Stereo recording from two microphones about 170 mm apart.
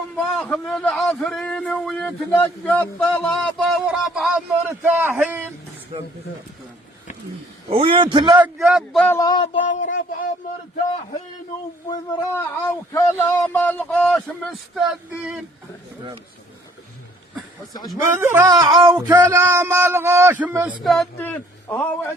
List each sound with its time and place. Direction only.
0.2 s a man's voice: 5° left (ahead or behind); by 5.5 s 15° right (ahead or behind)
7.7 s a man's voice: 35° right (ahead or behind)
8.4 s a man's voice: 5° right (ahead or behind)
9.0 s a sound: 20° left (ahead or behind)
9.6 s speech: 50° left (ahead or behind)
11.9 s a man's voice: 20° left (ahead or behind); by 15.4 s 5° right (ahead or behind)
18.2 s speech: 15° right (ahead or behind)
18.5 s speech: 25° right (ahead or behind)
20.8 s a man's voice: centre (ahead or behind)
21.2 s a man's voice: 10° left (ahead or behind)